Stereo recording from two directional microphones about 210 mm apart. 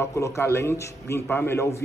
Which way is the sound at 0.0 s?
15° left (ahead or behind).